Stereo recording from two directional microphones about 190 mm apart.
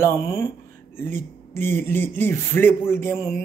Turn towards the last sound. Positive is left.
turn(degrees=15)  # may be behind; listen again after turning